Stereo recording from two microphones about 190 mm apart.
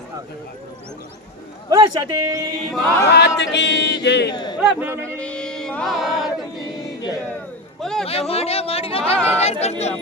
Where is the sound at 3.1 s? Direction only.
65° left (ahead or behind).